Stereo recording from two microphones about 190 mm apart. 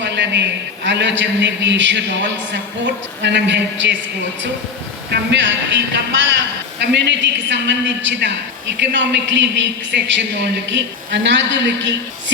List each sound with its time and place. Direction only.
0.0 s a sound: 65° right (ahead or behind)
0.9 s a man's voice: 70° right (ahead or behind)
5.1 s a man's voice: 70° right (ahead or behind)